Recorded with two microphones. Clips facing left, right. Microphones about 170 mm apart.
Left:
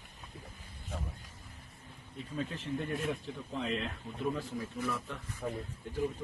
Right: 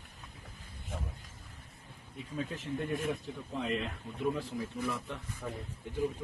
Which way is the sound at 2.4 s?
10° right (ahead or behind).